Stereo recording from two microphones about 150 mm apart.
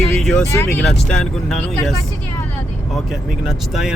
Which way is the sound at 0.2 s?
Centre (ahead or behind).